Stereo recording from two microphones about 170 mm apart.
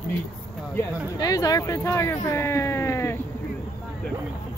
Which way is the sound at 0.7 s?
20° left (ahead or behind).